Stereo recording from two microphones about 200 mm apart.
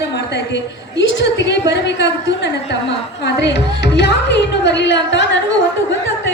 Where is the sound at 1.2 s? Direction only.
60° left (ahead or behind).